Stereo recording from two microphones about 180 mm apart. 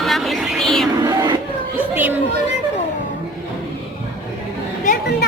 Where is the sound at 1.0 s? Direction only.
20° right (ahead or behind).